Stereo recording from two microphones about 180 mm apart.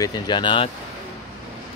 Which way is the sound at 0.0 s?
25° left (ahead or behind).